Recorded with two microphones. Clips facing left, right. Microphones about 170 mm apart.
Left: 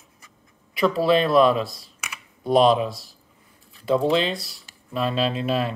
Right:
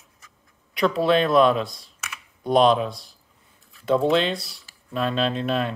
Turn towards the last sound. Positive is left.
turn(degrees=5)  # may be behind; listen again after turning